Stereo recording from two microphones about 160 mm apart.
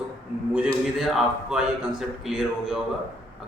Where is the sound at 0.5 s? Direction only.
5° right (ahead or behind).